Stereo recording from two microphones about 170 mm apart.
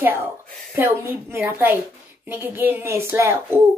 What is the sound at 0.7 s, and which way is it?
A woman's voice, 10° right (ahead or behind).